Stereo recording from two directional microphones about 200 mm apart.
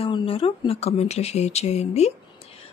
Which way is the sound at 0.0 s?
25° left (ahead or behind).